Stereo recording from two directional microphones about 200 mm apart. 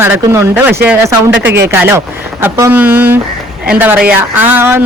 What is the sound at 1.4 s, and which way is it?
Speech, 55° right (ahead or behind).